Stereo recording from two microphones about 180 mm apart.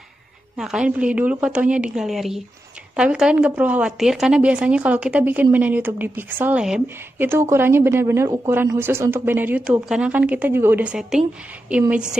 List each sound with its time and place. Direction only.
0.6 s a woman's voice: 5° right (ahead or behind)